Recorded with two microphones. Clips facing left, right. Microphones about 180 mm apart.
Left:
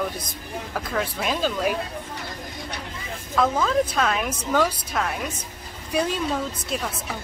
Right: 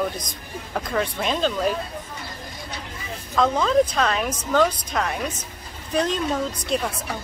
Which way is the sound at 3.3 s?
5° left (ahead or behind).